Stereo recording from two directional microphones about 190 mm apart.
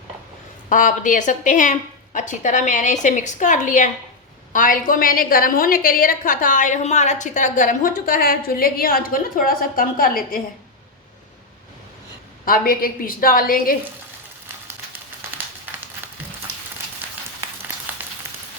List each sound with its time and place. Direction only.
0.7 s a woman's voice: 45° left (ahead or behind)
12.5 s a woman's voice: 50° left (ahead or behind)